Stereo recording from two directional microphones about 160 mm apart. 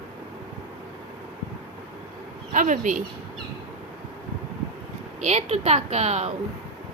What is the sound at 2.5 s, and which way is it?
Speech, 55° right (ahead or behind).